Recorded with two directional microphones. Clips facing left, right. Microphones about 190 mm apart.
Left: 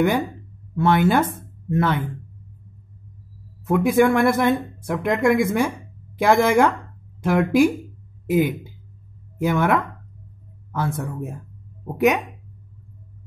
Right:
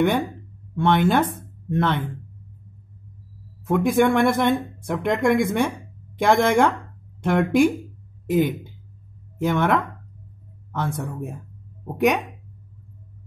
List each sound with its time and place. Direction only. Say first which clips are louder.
0.7 s speech: left 1 dB; 5° left (ahead or behind)
3.6 s speech: left 2 dB; 5° left (ahead or behind)